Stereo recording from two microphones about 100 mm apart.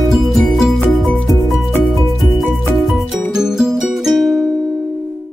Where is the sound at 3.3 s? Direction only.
5° right (ahead or behind).